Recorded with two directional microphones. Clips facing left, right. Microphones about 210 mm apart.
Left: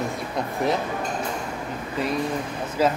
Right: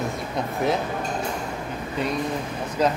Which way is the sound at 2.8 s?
5° left (ahead or behind).